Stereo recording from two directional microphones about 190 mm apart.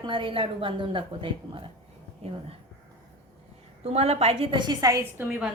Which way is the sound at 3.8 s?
30° right (ahead or behind).